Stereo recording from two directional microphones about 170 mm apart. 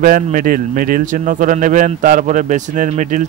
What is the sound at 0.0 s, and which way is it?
A man's voice, 55° right (ahead or behind).